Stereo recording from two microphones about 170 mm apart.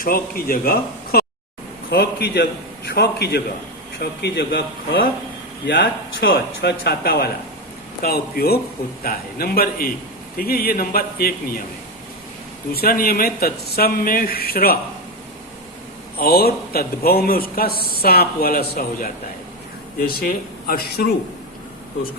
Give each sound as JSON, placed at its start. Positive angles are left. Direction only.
{"t": 0.0, "sound": "a man's voice", "side_deg": 60}
{"t": 1.9, "sound": "a man's voice", "side_deg": 75}
{"t": 5.6, "sound": "a man's voice", "side_deg": 90}
{"t": 12.7, "sound": "a man's voice", "side_deg": 60}
{"t": 16.1, "sound": "a man's voice", "side_deg": 60}